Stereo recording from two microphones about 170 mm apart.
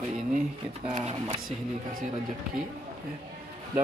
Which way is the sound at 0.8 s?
40° right (ahead or behind).